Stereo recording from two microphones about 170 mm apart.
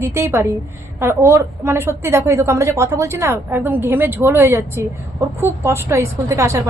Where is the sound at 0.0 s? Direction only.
15° right (ahead or behind).